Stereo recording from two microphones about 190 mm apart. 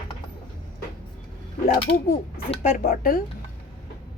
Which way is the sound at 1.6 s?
50° left (ahead or behind).